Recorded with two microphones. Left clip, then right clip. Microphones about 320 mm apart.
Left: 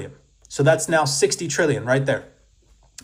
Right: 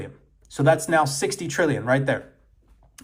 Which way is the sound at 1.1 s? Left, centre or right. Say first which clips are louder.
Left 6 dB; centre.